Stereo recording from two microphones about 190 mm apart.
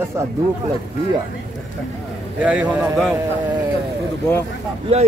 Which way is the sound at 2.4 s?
5° right (ahead or behind).